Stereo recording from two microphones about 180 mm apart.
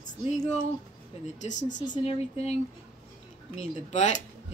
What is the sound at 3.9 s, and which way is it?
Speech, 40° left (ahead or behind).